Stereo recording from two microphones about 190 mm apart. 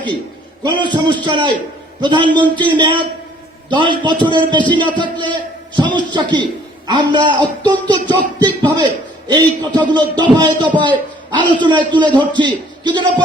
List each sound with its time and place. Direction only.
0.6 s a man's voice: 25° right (ahead or behind)